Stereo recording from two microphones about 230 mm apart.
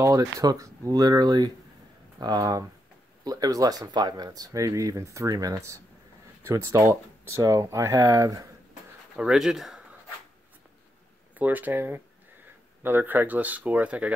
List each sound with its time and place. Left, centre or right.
0.0 s speech: centre
9.1 s speech: centre
11.3 s speech: centre